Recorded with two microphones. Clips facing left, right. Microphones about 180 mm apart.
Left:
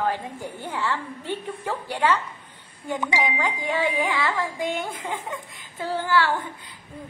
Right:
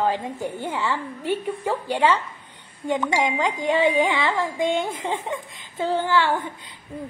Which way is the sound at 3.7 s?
25° right (ahead or behind).